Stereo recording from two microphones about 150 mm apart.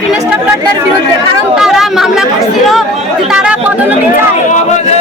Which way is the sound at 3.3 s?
5° right (ahead or behind).